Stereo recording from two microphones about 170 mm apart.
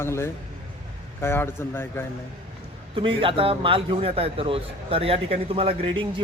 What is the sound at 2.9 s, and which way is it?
A man's voice, 30° right (ahead or behind).